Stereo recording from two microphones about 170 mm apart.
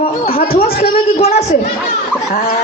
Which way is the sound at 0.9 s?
35° left (ahead or behind).